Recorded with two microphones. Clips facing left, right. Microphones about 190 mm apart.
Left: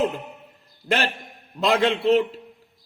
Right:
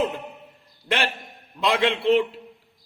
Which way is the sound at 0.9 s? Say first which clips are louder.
Left 2 dB; 40° left (ahead or behind).